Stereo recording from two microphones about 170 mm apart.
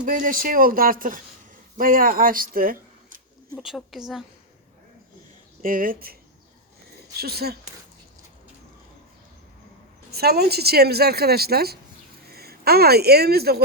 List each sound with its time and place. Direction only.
0.0 s speech: 55° right (ahead or behind)
3.5 s speech: centre (ahead or behind)
5.6 s speech: 55° right (ahead or behind)
7.2 s a woman's voice: 65° right (ahead or behind)
10.1 s a woman's voice: 70° right (ahead or behind)